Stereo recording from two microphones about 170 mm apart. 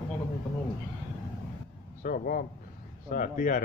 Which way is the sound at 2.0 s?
55° left (ahead or behind).